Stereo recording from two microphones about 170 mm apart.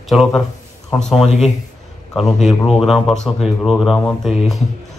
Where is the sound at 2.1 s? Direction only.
Centre (ahead or behind).